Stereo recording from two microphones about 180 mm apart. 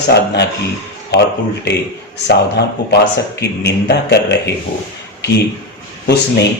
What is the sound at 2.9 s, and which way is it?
A man's voice, 70° left (ahead or behind).